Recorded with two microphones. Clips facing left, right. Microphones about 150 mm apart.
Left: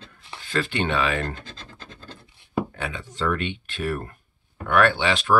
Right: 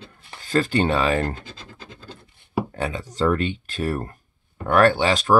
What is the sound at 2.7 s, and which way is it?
Speech, 40° right (ahead or behind).